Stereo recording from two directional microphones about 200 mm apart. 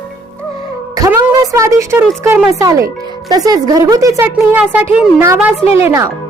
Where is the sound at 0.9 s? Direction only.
15° right (ahead or behind).